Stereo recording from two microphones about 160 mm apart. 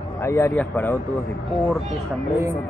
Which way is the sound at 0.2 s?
20° left (ahead or behind).